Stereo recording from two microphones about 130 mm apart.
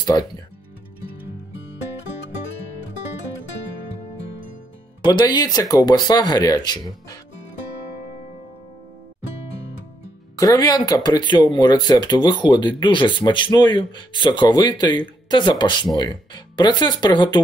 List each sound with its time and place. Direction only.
5.0 s speech: 30° left (ahead or behind)
10.3 s speech: 25° left (ahead or behind)